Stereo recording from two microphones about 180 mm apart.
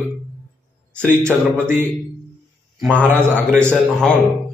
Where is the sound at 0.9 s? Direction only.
10° right (ahead or behind).